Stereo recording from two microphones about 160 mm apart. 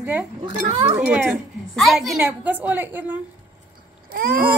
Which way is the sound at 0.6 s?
45° right (ahead or behind).